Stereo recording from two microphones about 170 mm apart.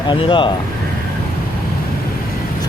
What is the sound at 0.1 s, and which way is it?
Speech, 30° left (ahead or behind).